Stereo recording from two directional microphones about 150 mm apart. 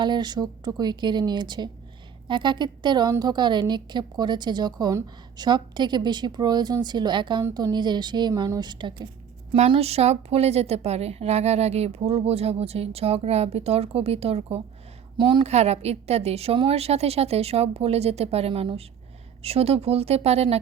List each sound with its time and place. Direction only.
0.0 s a woman's voice: 30° right (ahead or behind)
9.6 s a woman's voice: 40° right (ahead or behind)
15.4 s a woman's voice: 45° right (ahead or behind)